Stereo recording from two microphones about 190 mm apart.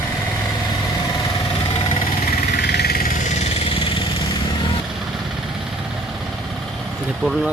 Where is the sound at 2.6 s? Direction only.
55° left (ahead or behind).